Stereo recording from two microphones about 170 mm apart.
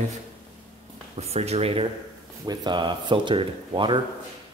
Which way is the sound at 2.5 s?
25° right (ahead or behind).